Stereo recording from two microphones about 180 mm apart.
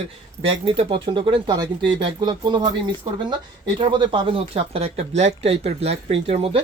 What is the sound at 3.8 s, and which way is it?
Speech, 25° right (ahead or behind).